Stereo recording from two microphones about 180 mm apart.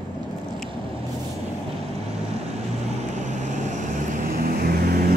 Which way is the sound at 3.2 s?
45° right (ahead or behind).